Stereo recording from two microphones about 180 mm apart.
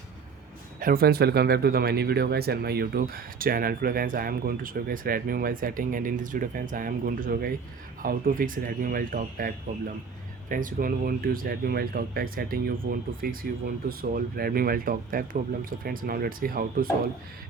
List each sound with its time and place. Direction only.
0.8 s speech: 55° right (ahead or behind)